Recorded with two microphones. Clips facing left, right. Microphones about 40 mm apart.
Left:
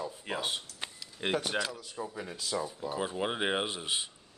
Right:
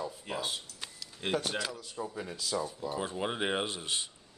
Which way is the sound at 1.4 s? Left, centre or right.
Centre.